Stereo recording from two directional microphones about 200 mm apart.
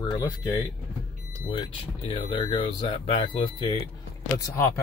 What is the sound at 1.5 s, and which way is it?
Speech, 25° left (ahead or behind).